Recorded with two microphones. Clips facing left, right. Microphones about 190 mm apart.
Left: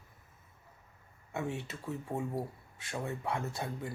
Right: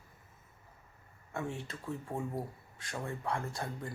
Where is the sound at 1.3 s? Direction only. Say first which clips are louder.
Left 2 dB; 20° left (ahead or behind).